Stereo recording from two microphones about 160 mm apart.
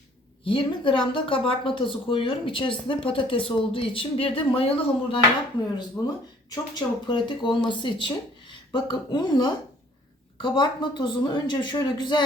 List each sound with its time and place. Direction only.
0.4 s speech: 30° left (ahead or behind)
6.0 s a woman's voice: 20° left (ahead or behind)